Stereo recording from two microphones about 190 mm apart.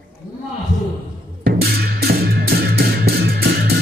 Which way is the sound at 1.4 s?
55° right (ahead or behind).